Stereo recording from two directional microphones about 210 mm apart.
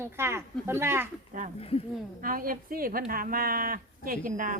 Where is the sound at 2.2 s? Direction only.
40° right (ahead or behind).